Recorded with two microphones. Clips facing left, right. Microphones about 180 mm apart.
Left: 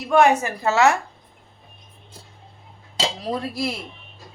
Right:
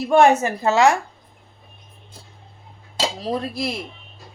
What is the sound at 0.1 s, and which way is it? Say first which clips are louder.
Speech: right 2 dB; 30° right (ahead or behind).